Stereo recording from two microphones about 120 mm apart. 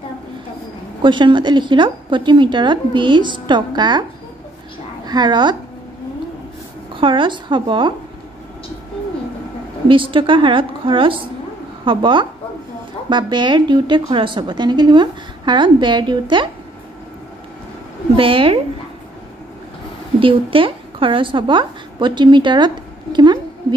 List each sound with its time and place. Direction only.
1.0 s a woman's voice: 40° right (ahead or behind)
5.0 s speech: 35° right (ahead or behind)
7.0 s speech: 45° right (ahead or behind)
9.8 s a woman's voice: 45° right (ahead or behind)
18.1 s speech: 50° right (ahead or behind)
20.2 s a woman's voice: 45° right (ahead or behind)